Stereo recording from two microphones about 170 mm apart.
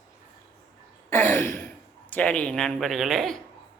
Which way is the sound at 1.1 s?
15° left (ahead or behind).